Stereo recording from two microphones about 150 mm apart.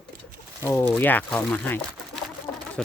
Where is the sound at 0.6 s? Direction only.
15° left (ahead or behind).